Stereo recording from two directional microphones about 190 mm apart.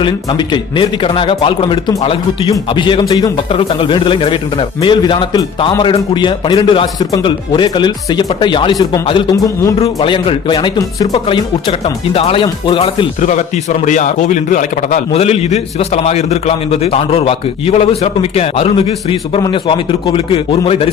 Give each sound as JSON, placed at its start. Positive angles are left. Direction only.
{"t": 0.0, "sound": "a man's voice", "side_deg": 25}
{"t": 13.1, "sound": "a man's voice", "side_deg": 40}